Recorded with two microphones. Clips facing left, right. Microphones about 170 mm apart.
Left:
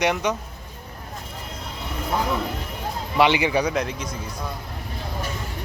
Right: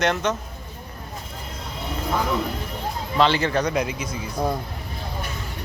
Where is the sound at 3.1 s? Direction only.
15° left (ahead or behind).